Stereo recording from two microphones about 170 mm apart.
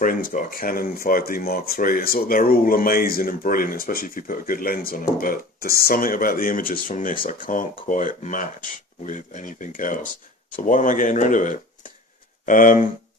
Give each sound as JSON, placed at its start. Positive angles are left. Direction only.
{"t": 0.0, "sound": "speech", "side_deg": 55}